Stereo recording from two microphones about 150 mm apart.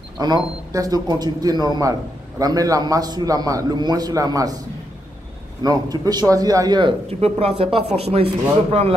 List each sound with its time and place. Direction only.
0.2 s a man's voice: 25° right (ahead or behind)
5.6 s a man's voice: 25° right (ahead or behind)
7.1 s speech: 45° right (ahead or behind)